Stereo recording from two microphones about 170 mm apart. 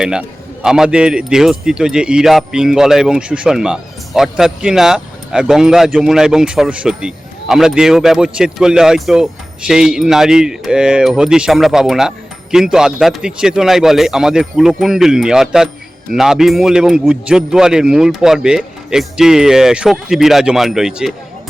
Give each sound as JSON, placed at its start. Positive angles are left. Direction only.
{"t": 0.0, "sound": "speech", "side_deg": -5}